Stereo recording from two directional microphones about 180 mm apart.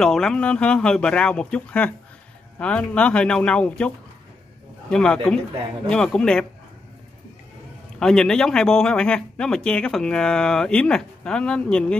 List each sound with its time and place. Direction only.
0.0 s speech: 5° left (ahead or behind)
8.0 s speech: 5° left (ahead or behind)